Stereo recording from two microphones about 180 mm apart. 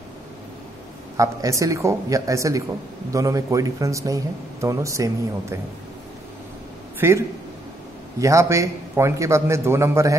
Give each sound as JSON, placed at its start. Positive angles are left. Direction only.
{"t": 1.1, "sound": "speech", "side_deg": -20}
{"t": 7.0, "sound": "a man's voice", "side_deg": -15}